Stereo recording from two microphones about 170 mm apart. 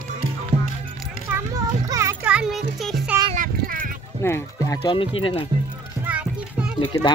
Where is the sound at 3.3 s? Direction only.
55° right (ahead or behind).